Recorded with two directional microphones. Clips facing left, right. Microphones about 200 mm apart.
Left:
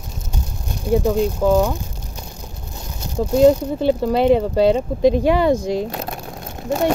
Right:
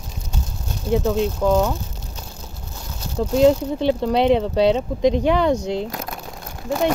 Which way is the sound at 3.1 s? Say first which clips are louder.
Left 2 dB; 10° left (ahead or behind).